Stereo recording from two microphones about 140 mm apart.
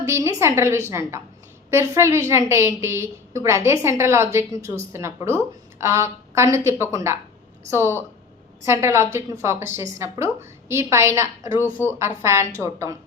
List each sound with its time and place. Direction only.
0.0 s a woman's voice: 20° right (ahead or behind)